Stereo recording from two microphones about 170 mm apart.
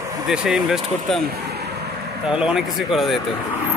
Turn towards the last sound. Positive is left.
turn(degrees=0)  # may be behind; listen again after turning